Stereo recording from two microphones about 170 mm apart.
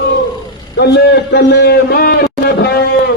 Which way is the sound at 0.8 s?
75° left (ahead or behind).